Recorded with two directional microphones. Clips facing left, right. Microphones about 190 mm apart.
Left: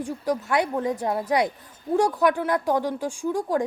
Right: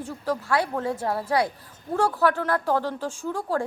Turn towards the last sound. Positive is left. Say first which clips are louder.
# left 3 dB
turn(degrees=15)  # may be behind; listen again after turning